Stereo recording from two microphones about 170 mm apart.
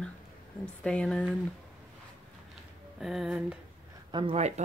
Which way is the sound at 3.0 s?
Centre (ahead or behind).